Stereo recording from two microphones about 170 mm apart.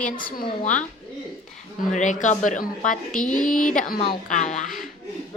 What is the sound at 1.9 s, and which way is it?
Speech, 45° left (ahead or behind).